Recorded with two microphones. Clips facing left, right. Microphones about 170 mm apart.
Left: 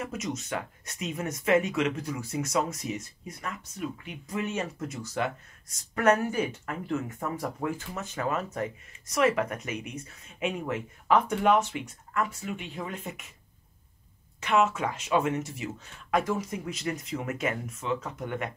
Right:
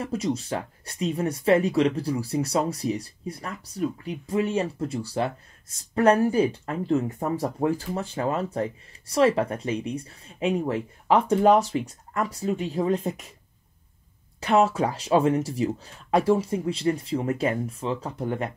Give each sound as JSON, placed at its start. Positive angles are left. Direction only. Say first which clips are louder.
{"t": 0.0, "sound": "speech", "louder": "right 7 dB", "side_deg": -30}
{"t": 14.4, "sound": "speech", "louder": "right 4 dB", "side_deg": -35}